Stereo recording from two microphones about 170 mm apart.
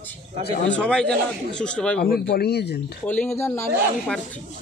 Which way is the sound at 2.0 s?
65° left (ahead or behind).